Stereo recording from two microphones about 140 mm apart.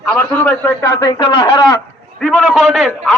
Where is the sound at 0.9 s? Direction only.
30° left (ahead or behind).